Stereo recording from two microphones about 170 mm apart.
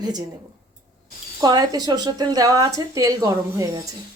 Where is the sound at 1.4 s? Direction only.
25° right (ahead or behind).